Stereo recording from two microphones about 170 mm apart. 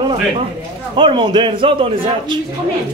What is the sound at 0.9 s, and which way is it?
A man's voice, 30° right (ahead or behind).